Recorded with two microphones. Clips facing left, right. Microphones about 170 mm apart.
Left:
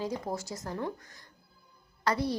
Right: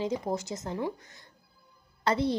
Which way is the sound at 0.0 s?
20° right (ahead or behind).